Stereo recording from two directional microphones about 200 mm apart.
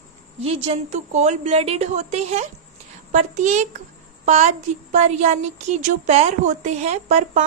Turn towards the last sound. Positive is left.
turn(degrees=-35)  # may be behind; listen again after turning